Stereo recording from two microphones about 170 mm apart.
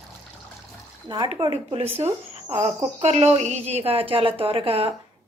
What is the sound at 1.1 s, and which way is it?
A woman's voice, 25° right (ahead or behind).